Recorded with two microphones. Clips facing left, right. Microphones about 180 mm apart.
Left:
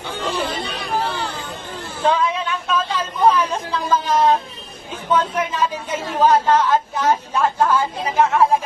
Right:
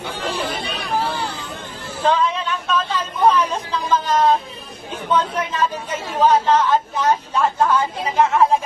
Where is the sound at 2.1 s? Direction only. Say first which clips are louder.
Even; 10° left (ahead or behind).